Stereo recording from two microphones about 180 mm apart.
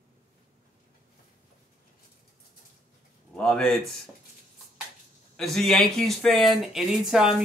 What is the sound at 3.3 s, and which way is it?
Speech, 5° left (ahead or behind).